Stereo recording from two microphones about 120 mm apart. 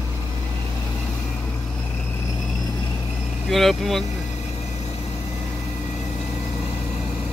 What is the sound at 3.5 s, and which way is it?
Speech, centre (ahead or behind).